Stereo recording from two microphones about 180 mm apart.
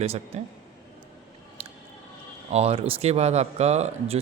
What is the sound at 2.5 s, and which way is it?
Speech, 35° right (ahead or behind).